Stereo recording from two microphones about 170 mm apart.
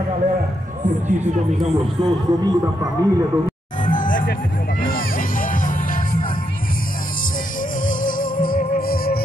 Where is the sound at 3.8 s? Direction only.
50° left (ahead or behind).